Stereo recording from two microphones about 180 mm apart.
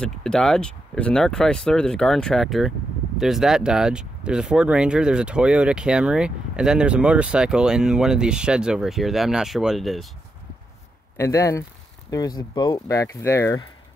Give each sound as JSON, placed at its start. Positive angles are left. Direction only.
{"t": 0.0, "sound": "speech", "side_deg": 5}
{"t": 11.1, "sound": "speech", "side_deg": 15}